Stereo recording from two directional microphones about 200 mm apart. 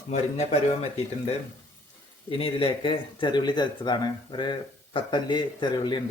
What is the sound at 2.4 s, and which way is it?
Speech, 25° left (ahead or behind).